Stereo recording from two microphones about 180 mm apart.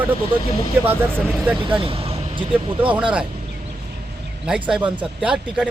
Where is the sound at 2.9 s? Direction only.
5° right (ahead or behind).